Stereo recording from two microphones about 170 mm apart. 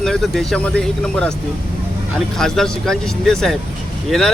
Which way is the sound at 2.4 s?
5° left (ahead or behind).